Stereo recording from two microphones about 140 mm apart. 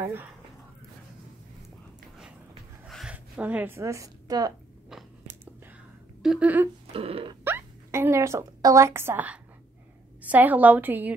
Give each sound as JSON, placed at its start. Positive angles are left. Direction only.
{"t": 2.9, "sound": "a woman's voice", "side_deg": -5}
{"t": 5.2, "sound": "whispering", "side_deg": -15}
{"t": 6.2, "sound": "a woman's voice", "side_deg": -5}
{"t": 6.9, "sound": "a sound", "side_deg": -45}
{"t": 7.4, "sound": "a woman's voice", "side_deg": -15}